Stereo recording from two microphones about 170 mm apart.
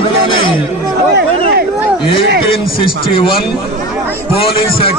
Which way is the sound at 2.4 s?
30° left (ahead or behind).